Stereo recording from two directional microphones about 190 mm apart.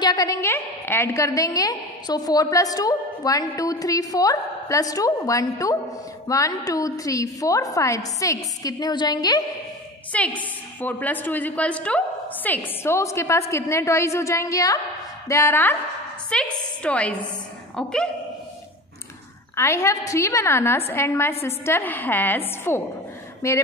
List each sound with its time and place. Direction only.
0.0 s a woman's voice: 20° left (ahead or behind)
10.1 s a woman's voice: 5° left (ahead or behind)
16.3 s a sound: 5° left (ahead or behind)
17.8 s a woman's voice: 5° left (ahead or behind)
19.5 s a woman's voice: 15° left (ahead or behind)